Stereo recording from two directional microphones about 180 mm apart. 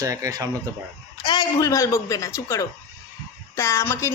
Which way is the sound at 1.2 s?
25° left (ahead or behind).